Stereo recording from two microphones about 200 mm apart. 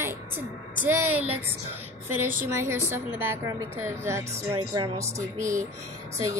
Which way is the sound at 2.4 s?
10° right (ahead or behind).